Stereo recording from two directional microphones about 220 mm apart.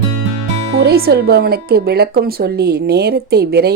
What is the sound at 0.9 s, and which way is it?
A woman's voice, 45° right (ahead or behind).